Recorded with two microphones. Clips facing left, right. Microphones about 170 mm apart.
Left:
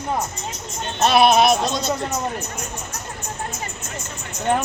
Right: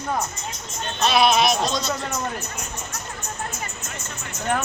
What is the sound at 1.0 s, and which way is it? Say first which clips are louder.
Speech: left 4 dB; 55° left (ahead or behind).